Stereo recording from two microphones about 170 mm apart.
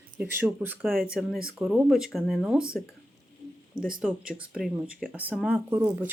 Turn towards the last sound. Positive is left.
turn(degrees=-10)  # may be behind; listen again after turning